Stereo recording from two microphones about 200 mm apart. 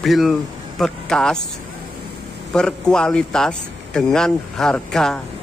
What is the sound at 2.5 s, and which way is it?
Speech, 5° left (ahead or behind).